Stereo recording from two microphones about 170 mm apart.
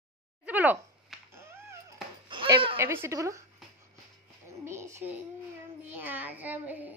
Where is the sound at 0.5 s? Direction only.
10° right (ahead or behind).